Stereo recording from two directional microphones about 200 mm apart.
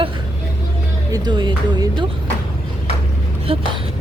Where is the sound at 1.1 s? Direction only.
20° right (ahead or behind).